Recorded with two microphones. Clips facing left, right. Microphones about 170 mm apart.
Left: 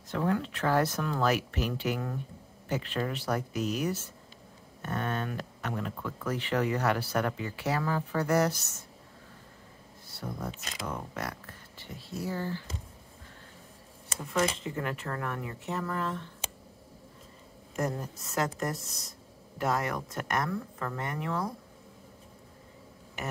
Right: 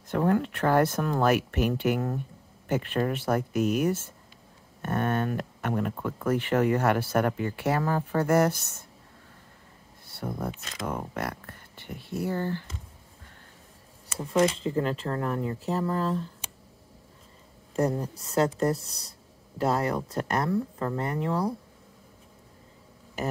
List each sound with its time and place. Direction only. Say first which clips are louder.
0.1 s speech: right 5 dB; 50° right (ahead or behind)
10.0 s a sound: right 5 dB; 55° right (ahead or behind)
10.9 s speech: right 5 dB; 55° right (ahead or behind)
14.3 s speech: right 6 dB; 30° right (ahead or behind)
17.7 s speech: right 6 dB; 30° right (ahead or behind)